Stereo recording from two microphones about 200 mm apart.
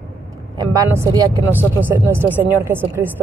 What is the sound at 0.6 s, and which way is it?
Speech, 15° right (ahead or behind).